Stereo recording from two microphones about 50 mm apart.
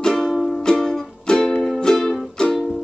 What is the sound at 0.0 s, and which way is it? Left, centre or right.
Music, centre.